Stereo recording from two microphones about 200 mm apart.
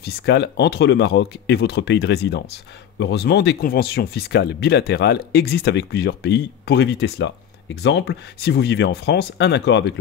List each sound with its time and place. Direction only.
0.0 s speech: 55° left (ahead or behind)